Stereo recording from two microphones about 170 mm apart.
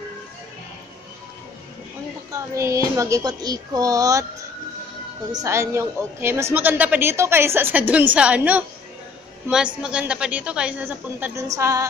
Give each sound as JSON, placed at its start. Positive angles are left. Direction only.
{"t": 2.3, "sound": "a child's voice", "side_deg": -15}
{"t": 5.3, "sound": "a woman's voice", "side_deg": -20}
{"t": 9.8, "sound": "a woman's voice", "side_deg": -5}